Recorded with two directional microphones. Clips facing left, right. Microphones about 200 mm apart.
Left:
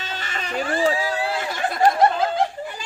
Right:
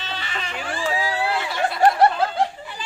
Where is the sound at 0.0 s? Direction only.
45° left (ahead or behind).